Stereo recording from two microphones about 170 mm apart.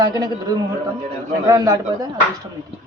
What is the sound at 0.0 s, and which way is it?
A man's voice, 20° right (ahead or behind).